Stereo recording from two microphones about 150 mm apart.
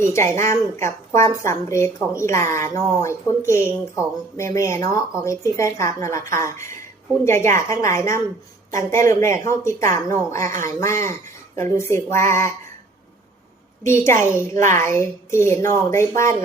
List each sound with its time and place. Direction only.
0.0 s a woman's voice: 15° left (ahead or behind)
13.8 s a woman's voice: 20° left (ahead or behind)
14.5 s speech: 55° right (ahead or behind)
14.8 s a woman's voice: 20° left (ahead or behind)